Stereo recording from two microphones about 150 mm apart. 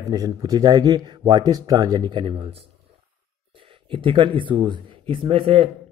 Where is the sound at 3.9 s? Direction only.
35° right (ahead or behind).